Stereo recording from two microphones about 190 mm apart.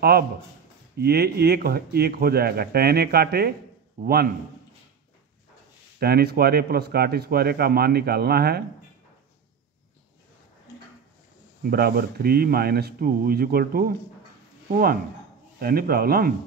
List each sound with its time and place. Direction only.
0.9 s speech: 55° right (ahead or behind)
5.9 s speech: 55° right (ahead or behind)
11.7 s speech: 50° right (ahead or behind)